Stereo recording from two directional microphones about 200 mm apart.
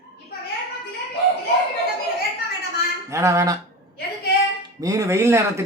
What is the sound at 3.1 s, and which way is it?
Speech, 15° right (ahead or behind).